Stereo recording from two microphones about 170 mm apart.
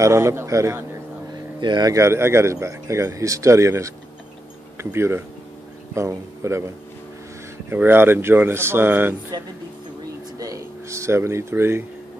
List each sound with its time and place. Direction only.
0.0 s speech: 15° right (ahead or behind)
7.7 s speech: 10° right (ahead or behind)
9.3 s speech: 25° right (ahead or behind)
10.4 s a sound: 20° right (ahead or behind)